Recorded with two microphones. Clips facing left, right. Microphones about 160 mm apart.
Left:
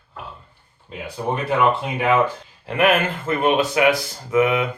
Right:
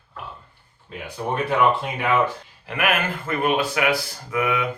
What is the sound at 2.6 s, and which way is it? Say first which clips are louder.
Speech: left 5 dB; 25° left (ahead or behind).